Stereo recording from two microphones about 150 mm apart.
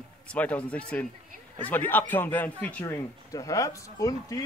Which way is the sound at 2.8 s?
20° left (ahead or behind).